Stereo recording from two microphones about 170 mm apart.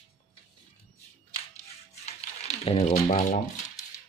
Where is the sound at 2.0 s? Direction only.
40° left (ahead or behind).